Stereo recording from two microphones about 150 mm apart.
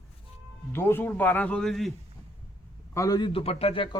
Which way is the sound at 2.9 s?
25° left (ahead or behind).